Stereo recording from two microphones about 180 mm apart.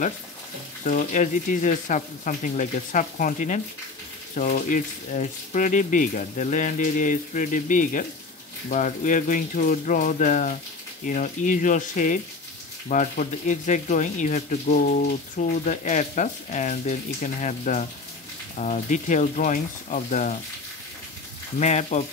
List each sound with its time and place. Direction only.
0.8 s speech: 45° left (ahead or behind)
21.5 s speech: 40° left (ahead or behind)